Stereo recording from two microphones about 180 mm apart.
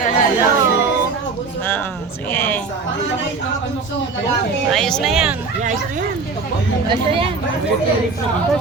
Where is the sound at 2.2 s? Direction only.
10° left (ahead or behind).